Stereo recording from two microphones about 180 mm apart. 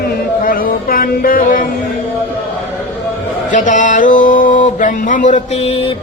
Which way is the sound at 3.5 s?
45° left (ahead or behind).